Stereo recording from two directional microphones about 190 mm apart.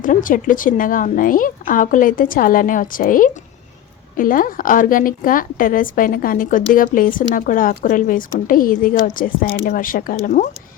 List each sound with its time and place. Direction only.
0.0 s a woman's voice: 45° left (ahead or behind)